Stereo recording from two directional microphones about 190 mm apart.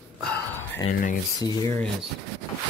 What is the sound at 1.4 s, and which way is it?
Speech, 20° left (ahead or behind).